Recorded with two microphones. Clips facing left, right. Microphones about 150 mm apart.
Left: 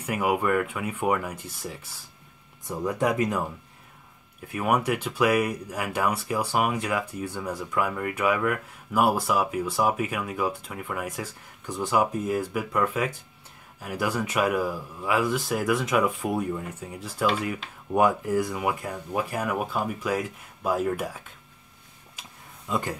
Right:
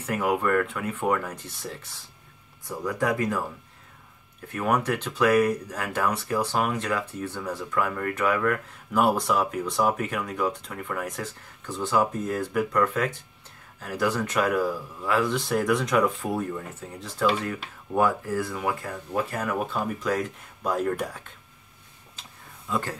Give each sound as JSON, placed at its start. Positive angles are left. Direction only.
{"t": 0.0, "sound": "speech", "side_deg": 10}
{"t": 2.6, "sound": "speech", "side_deg": 20}
{"t": 4.5, "sound": "speech", "side_deg": 10}
{"t": 22.2, "sound": "a sound", "side_deg": 10}
{"t": 22.7, "sound": "speech", "side_deg": 15}